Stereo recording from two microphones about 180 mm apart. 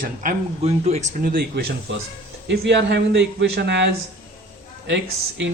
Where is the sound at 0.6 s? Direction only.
40° right (ahead or behind).